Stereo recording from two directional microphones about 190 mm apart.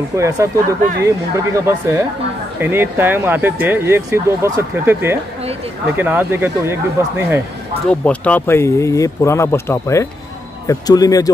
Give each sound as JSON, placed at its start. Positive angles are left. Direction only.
{"t": 0.1, "sound": "speech", "side_deg": -15}
{"t": 7.9, "sound": "speech", "side_deg": 5}